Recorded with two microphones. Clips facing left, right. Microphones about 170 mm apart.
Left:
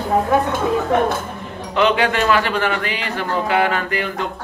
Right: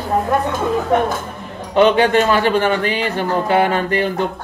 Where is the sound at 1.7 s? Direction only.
30° right (ahead or behind).